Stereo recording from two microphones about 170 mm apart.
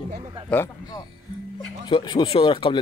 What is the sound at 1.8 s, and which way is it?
Speech, 25° left (ahead or behind).